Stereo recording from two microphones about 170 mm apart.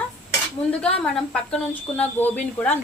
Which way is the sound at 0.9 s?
5° left (ahead or behind).